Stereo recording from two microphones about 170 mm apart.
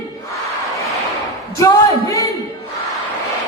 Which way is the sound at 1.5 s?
20° left (ahead or behind).